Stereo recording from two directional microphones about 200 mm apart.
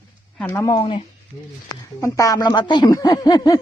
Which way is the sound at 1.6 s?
15° left (ahead or behind).